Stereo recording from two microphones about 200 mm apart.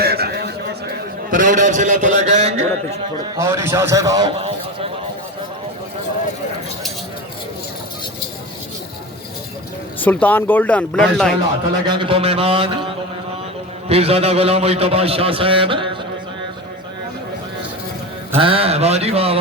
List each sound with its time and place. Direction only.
0.0 s a sound: 50° right (ahead or behind); by 2.6 s 35° right (ahead or behind)
3.3 s a man's voice: 15° right (ahead or behind)
10.0 s speech: 10° left (ahead or behind)
11.9 s a man's voice: 25° right (ahead or behind)
13.8 s a man's voice: 30° right (ahead or behind)
18.3 s a man's voice: 25° right (ahead or behind)